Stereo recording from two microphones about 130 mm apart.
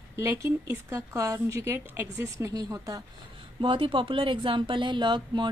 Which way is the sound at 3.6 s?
40° right (ahead or behind).